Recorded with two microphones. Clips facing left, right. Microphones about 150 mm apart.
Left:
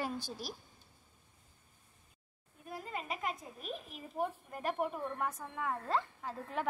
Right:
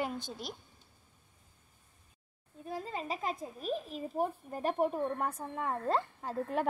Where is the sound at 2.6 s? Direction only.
30° right (ahead or behind).